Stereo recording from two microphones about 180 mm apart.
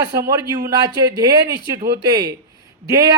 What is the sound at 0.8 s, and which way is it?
Speech, 20° right (ahead or behind).